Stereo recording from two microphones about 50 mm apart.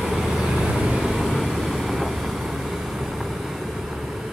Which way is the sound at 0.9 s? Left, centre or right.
Centre.